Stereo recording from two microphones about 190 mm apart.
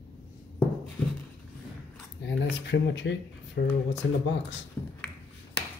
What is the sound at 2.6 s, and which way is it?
Speech, 65° left (ahead or behind).